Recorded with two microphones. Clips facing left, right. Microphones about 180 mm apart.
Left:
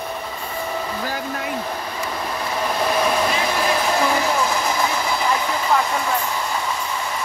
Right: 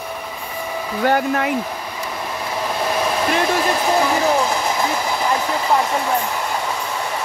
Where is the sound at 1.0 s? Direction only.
65° right (ahead or behind).